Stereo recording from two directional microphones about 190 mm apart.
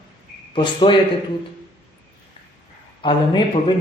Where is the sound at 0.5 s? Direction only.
25° left (ahead or behind).